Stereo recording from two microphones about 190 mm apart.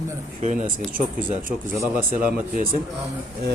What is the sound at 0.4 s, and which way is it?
Speech, 40° right (ahead or behind).